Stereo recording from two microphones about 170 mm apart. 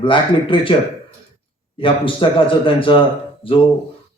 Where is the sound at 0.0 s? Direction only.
30° left (ahead or behind).